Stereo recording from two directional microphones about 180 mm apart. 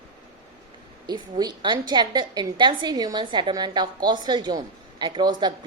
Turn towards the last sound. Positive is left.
turn(degrees=-25)  # may be behind; listen again after turning